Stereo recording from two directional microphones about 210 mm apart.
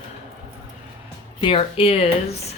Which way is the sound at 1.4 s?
25° left (ahead or behind).